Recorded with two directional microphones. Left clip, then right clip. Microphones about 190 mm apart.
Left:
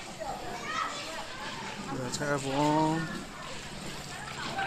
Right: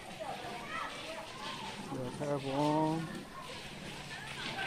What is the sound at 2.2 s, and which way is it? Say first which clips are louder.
Speech: left 5 dB; 20° left (ahead or behind).